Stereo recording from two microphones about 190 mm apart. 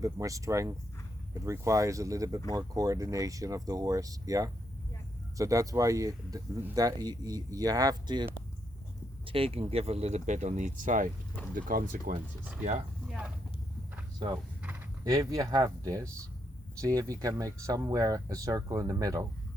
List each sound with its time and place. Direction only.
0.0 s speech: 15° right (ahead or behind); by 12.2 s 45° right (ahead or behind)
13.1 s speech: 5° right (ahead or behind)
15.0 s speech: 20° right (ahead or behind)